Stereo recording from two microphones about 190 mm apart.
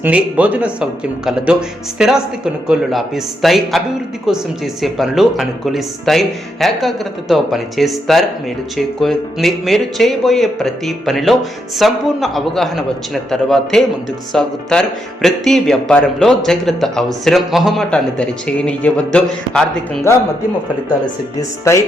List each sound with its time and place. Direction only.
0.0 s speech: 5° right (ahead or behind)
21.3 s speech: 15° left (ahead or behind)